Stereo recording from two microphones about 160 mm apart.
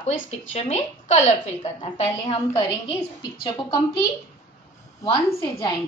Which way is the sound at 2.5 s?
30° left (ahead or behind).